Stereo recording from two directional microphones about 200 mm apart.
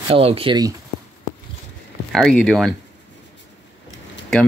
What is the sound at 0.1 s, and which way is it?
Speech, 30° right (ahead or behind).